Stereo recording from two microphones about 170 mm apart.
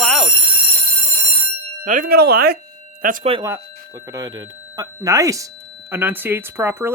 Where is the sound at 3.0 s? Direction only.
55° right (ahead or behind).